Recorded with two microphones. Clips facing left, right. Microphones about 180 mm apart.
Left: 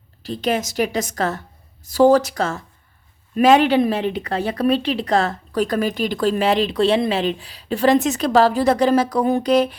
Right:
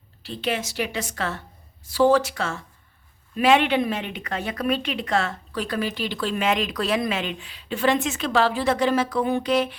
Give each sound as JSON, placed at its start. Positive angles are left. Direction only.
{"t": 0.2, "sound": "a woman's voice", "side_deg": 40}